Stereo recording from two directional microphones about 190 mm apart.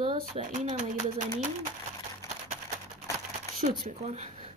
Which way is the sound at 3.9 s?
35° right (ahead or behind).